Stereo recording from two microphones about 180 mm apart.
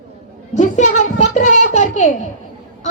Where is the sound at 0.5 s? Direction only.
40° left (ahead or behind).